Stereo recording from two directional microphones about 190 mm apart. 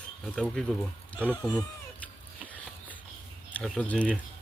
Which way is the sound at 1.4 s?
20° left (ahead or behind).